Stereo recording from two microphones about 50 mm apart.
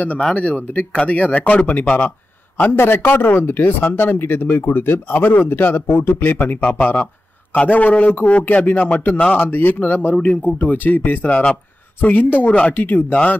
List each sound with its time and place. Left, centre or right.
0.4 s speech: left
6.8 s speech: left